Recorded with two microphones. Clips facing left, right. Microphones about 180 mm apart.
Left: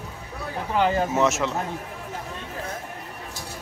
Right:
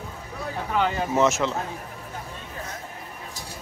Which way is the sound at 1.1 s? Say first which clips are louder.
Right 1 dB; centre (ahead or behind).